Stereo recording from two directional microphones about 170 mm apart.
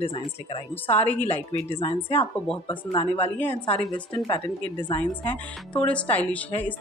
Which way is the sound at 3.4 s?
10° left (ahead or behind).